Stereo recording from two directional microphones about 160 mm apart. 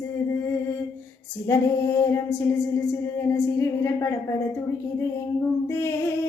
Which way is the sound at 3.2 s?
20° left (ahead or behind).